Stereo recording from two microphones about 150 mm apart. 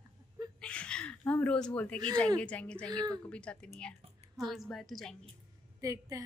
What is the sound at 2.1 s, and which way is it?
A woman's voice, 5° left (ahead or behind).